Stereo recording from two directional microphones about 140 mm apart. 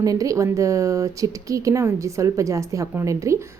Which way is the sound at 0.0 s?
25° right (ahead or behind).